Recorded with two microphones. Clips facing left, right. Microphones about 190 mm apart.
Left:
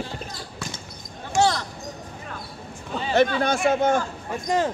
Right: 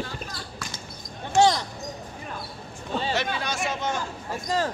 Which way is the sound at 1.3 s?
15° right (ahead or behind).